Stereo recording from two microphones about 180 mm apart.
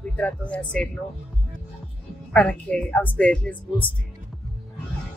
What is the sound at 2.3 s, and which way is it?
Speech, 5° left (ahead or behind).